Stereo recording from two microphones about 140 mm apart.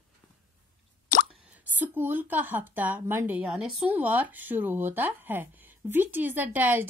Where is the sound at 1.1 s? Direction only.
70° left (ahead or behind).